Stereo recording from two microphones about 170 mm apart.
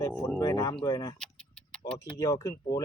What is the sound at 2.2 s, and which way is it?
Speech, 20° left (ahead or behind).